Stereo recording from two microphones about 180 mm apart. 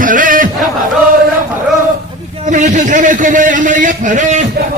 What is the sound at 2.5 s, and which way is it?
A man's voice, 45° right (ahead or behind).